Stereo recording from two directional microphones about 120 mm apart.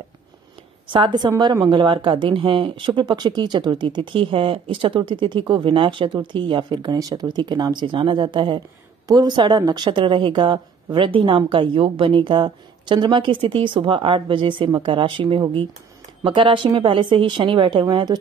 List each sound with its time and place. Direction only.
0.8 s a woman's voice: 40° right (ahead or behind)